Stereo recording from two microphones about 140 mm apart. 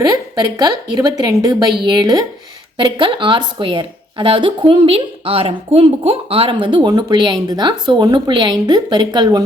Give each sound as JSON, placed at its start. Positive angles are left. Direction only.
{"t": 0.0, "sound": "a woman's voice", "side_deg": -25}